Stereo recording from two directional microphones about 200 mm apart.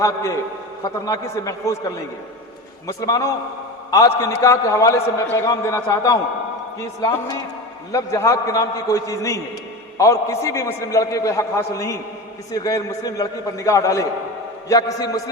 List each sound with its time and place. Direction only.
0.0 s a man's voice: 15° left (ahead or behind)